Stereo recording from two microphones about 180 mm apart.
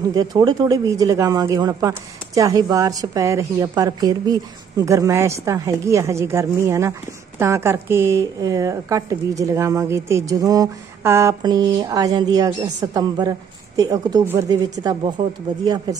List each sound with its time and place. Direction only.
0.1 s speech: 20° right (ahead or behind)